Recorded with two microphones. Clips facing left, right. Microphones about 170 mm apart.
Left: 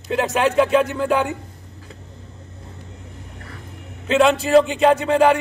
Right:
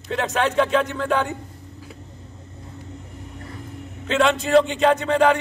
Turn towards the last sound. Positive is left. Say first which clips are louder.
# left 2 dB
turn(degrees=5)  # may be behind; listen again after turning